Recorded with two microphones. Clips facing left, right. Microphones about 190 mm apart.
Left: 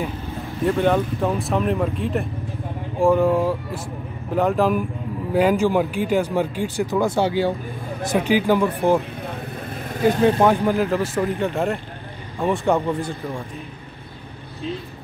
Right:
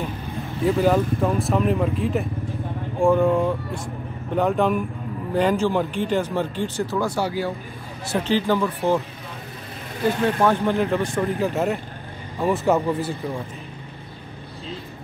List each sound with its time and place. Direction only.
0.7 s speech: 5° right (ahead or behind); by 7.5 s 25° left (ahead or behind)
8.0 s speech: 15° left (ahead or behind)
10.0 s speech: 15° left (ahead or behind)
10.7 s speech: centre (ahead or behind)